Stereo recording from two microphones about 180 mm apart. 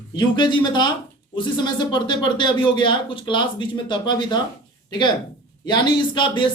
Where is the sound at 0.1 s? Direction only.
25° left (ahead or behind).